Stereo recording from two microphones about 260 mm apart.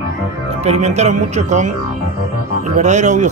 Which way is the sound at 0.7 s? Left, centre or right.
Right.